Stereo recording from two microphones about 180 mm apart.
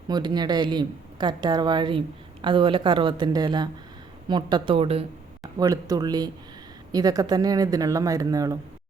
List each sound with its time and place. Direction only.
0.1 s a woman's voice: 25° right (ahead or behind)
5.5 s a woman's voice: 20° right (ahead or behind)